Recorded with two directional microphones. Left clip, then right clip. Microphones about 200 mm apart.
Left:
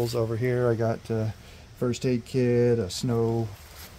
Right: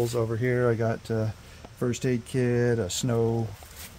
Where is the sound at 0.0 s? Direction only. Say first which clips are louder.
Even; 5° left (ahead or behind).